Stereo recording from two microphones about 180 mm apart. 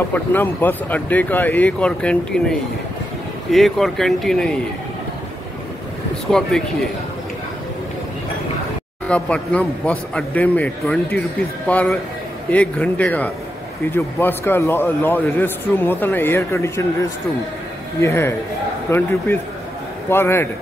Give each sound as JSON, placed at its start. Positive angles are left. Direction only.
{"t": 0.1, "sound": "a man's voice", "side_deg": 10}
{"t": 3.5, "sound": "speech", "side_deg": 0}
{"t": 6.3, "sound": "speech", "side_deg": 5}
{"t": 9.0, "sound": "a man's voice", "side_deg": 5}
{"t": 18.0, "sound": "a man's voice", "side_deg": 15}